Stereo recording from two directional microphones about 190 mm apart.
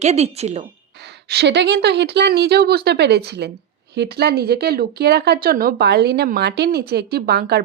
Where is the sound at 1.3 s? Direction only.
65° right (ahead or behind).